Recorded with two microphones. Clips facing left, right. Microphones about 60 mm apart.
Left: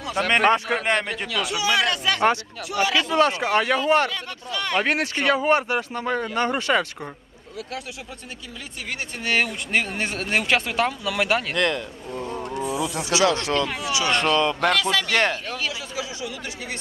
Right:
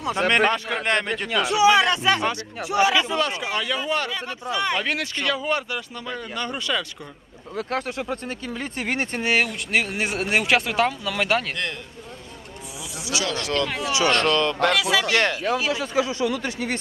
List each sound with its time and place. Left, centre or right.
0.0 s speech: right
0.8 s speech: centre
1.3 s speech: right
3.2 s speech: left
4.5 s speech: centre
4.7 s speech: left
7.5 s speech: right
9.4 s speech: centre
11.5 s speech: left
12.6 s speech: left
13.1 s speech: left
13.7 s speech: centre
14.7 s speech: centre
15.7 s speech: right